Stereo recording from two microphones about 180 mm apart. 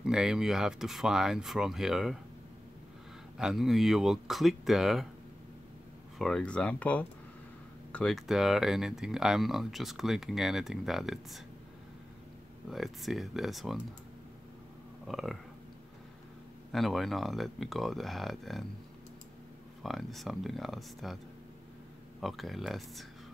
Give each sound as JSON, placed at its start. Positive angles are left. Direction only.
{"t": 0.0, "sound": "speech", "side_deg": -5}
{"t": 3.3, "sound": "speech", "side_deg": 0}
{"t": 6.1, "sound": "speech", "side_deg": 0}
{"t": 12.6, "sound": "speech", "side_deg": 0}
{"t": 15.0, "sound": "speech", "side_deg": 0}
{"t": 16.7, "sound": "speech", "side_deg": 0}
{"t": 19.8, "sound": "speech", "side_deg": 0}
{"t": 22.2, "sound": "speech", "side_deg": 0}